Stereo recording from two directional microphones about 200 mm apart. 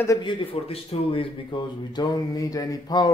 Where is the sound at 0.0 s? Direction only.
20° left (ahead or behind).